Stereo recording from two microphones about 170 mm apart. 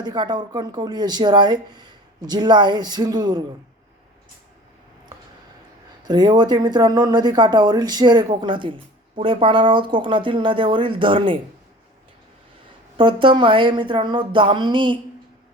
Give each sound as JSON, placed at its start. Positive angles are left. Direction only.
{"t": 0.0, "sound": "speech", "side_deg": -25}
{"t": 6.1, "sound": "speech", "side_deg": -25}
{"t": 13.0, "sound": "speech", "side_deg": -30}